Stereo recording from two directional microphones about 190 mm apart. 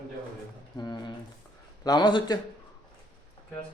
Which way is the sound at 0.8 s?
20° left (ahead or behind).